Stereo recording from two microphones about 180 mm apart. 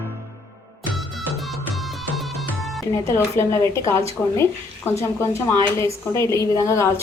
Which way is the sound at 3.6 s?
15° left (ahead or behind).